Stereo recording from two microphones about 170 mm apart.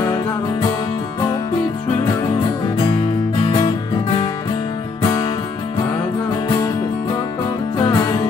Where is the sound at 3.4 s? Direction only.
25° left (ahead or behind).